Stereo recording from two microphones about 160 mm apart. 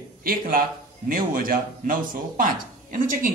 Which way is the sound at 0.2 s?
65° right (ahead or behind).